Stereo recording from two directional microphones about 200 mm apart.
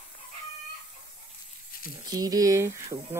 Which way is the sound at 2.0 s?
20° right (ahead or behind).